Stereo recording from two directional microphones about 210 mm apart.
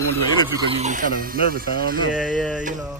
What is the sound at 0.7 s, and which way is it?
Speech, 30° right (ahead or behind).